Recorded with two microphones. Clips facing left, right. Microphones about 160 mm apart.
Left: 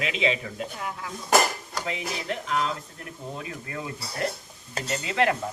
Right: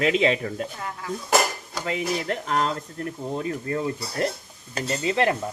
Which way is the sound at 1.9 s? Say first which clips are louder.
Right 6 dB; 45° right (ahead or behind).